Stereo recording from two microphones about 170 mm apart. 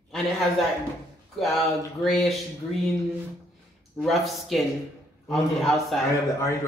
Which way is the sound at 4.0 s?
Centre (ahead or behind).